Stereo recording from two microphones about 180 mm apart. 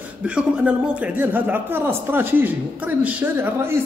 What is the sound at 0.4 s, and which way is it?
Speech, 10° right (ahead or behind).